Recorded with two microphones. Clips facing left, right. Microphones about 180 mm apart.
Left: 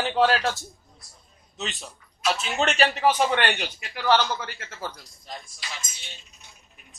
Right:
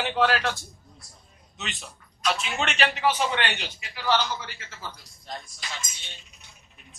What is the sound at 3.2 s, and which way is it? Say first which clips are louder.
A man's voice: left 4 dB; 55° left (ahead or behind).